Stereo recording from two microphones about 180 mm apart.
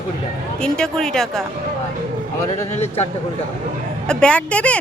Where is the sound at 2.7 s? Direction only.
35° left (ahead or behind).